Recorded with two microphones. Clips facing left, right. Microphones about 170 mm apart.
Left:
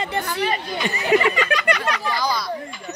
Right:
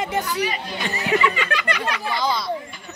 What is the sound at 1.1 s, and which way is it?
Speech, 15° left (ahead or behind).